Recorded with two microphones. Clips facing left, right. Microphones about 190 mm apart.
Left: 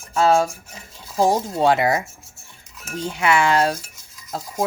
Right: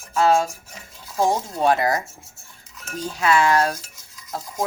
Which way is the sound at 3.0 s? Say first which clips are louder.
Even; 25° left (ahead or behind).